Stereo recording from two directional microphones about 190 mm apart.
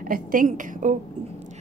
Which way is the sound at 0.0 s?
45° right (ahead or behind).